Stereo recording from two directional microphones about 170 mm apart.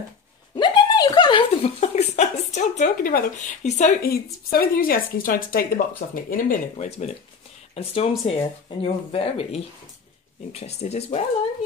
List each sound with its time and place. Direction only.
0.6 s a sound: 25° left (ahead or behind); by 3.9 s 45° left (ahead or behind)
4.0 s speech: 60° left (ahead or behind)
7.7 s speech: 35° left (ahead or behind)